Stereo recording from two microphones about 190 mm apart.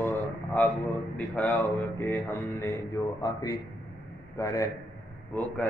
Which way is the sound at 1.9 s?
15° left (ahead or behind).